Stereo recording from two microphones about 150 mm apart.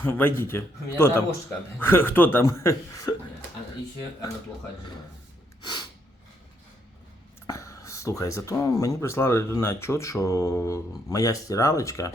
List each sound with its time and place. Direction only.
0.0 s a man's voice: 15° left (ahead or behind)
5.6 s snort: 30° left (ahead or behind)
7.4 s a sound: 20° left (ahead or behind)
8.6 s speech: 25° left (ahead or behind)